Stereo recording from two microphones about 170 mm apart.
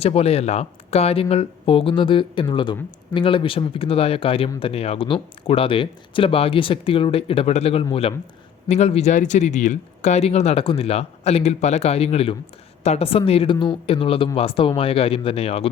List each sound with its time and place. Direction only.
0.0 s speech: 35° left (ahead or behind)